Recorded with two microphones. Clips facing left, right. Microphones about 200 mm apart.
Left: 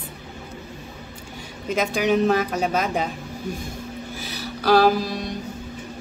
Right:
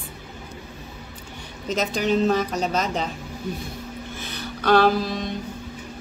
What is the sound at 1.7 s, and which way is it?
Speech, 10° left (ahead or behind).